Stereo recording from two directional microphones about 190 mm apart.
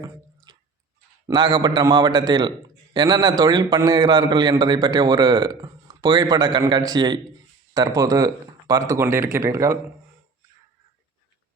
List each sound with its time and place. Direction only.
0.5 s drip: 20° right (ahead or behind)
1.3 s a man's voice: 20° right (ahead or behind)